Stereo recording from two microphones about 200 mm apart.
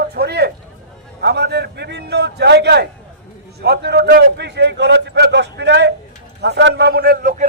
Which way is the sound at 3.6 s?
55° right (ahead or behind).